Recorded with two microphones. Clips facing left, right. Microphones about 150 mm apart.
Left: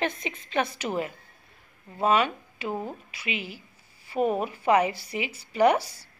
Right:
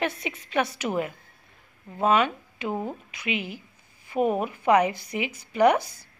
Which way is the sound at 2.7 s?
15° right (ahead or behind).